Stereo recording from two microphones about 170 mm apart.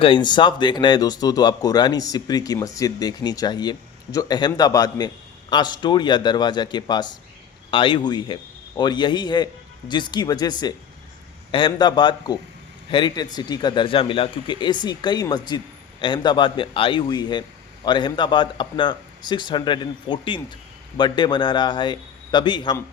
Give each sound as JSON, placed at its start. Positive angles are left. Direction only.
{"t": 0.0, "sound": "speech", "side_deg": 30}